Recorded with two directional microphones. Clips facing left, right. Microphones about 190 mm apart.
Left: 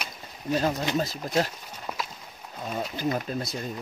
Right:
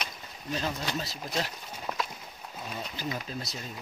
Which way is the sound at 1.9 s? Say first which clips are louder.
Right 1 dB; 5° left (ahead or behind).